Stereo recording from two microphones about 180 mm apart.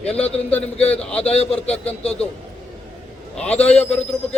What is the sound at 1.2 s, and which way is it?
Speech, 35° left (ahead or behind).